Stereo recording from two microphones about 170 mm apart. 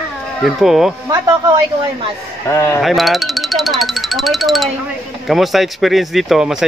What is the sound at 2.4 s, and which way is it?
Speech, 15° left (ahead or behind).